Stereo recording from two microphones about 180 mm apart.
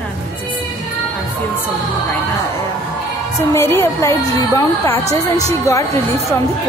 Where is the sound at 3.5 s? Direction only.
15° left (ahead or behind).